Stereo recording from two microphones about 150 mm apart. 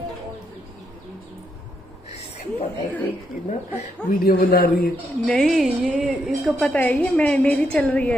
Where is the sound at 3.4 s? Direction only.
65° left (ahead or behind); by 4.9 s 90° left.